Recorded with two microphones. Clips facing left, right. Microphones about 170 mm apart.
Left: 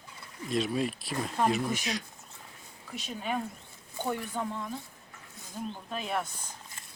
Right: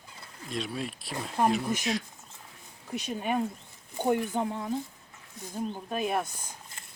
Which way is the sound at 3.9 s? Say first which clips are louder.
Right 6 dB; 20° right (ahead or behind).